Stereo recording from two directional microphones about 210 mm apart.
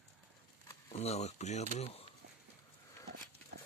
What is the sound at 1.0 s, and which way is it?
Speech, 30° left (ahead or behind).